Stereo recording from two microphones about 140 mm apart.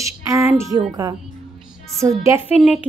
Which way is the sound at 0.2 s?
20° right (ahead or behind).